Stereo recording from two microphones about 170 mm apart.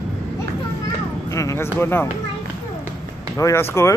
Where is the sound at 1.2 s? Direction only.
20° left (ahead or behind).